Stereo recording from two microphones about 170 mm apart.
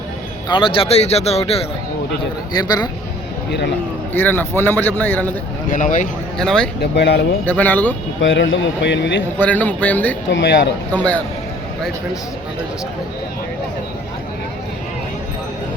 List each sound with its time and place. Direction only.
0.4 s speech: 30° left (ahead or behind)
2.5 s speech: 25° left (ahead or behind)
4.1 s a man's voice: 10° left (ahead or behind)
5.7 s a man's voice: 50° left (ahead or behind)
6.4 s speech: 5° left (ahead or behind)
6.7 s speech: 80° left
7.4 s a man's voice: 10° left (ahead or behind)
8.2 s a man's voice: 90° left
9.4 s a man's voice: 10° left (ahead or behind)
10.2 s a man's voice: 90° left
10.9 s a man's voice: 10° left (ahead or behind)